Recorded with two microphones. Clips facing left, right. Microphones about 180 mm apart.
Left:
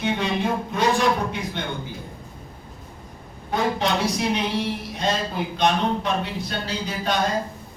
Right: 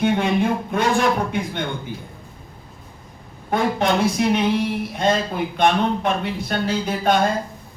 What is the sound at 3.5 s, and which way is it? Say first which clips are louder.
Speech: right 3 dB; 55° right (ahead or behind).